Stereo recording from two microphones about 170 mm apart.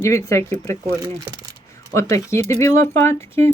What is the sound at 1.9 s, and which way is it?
Speech, 20° left (ahead or behind).